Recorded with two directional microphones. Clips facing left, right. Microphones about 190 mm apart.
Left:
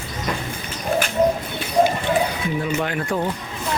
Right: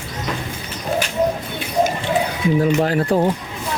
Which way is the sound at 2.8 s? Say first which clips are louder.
Right 6 dB; 35° right (ahead or behind).